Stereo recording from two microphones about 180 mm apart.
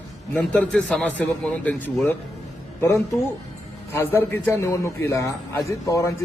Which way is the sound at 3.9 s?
15° left (ahead or behind).